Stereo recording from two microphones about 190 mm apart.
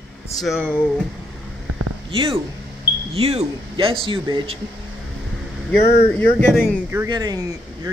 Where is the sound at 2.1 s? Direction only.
30° right (ahead or behind).